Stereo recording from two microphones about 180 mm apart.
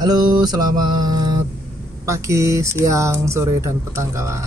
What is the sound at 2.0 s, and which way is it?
Speech, 15° right (ahead or behind).